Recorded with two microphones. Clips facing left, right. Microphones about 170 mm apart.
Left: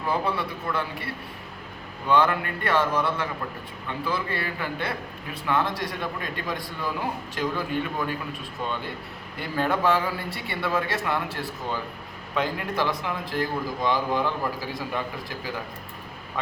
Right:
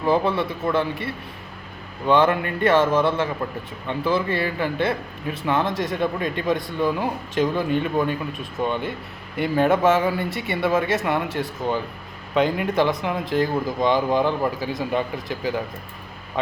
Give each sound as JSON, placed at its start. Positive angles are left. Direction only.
{"t": 0.1, "sound": "speech", "side_deg": -25}